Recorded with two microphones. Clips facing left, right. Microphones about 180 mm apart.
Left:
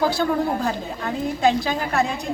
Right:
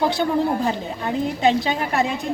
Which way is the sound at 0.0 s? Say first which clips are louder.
Right 1 dB; 20° right (ahead or behind).